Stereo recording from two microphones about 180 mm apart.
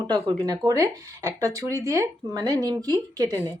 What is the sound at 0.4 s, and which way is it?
Speech, 20° right (ahead or behind).